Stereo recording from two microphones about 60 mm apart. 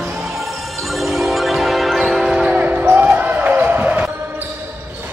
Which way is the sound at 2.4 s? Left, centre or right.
Right.